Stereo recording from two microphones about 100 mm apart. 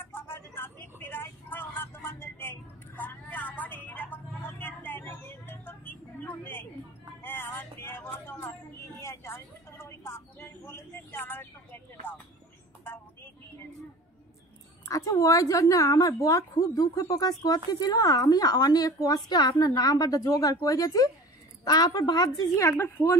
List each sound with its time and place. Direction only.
0.0 s vehicle: 20° left (ahead or behind)
7.2 s a sound: 20° left (ahead or behind)
14.9 s a woman's voice: 30° left (ahead or behind)
22.6 s a woman's voice: 25° left (ahead or behind)